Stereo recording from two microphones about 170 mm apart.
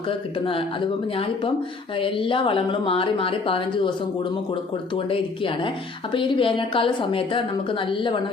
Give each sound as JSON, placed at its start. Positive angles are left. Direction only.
{"t": 0.1, "sound": "a woman's voice", "side_deg": 30}
{"t": 4.9, "sound": "a woman's voice", "side_deg": 30}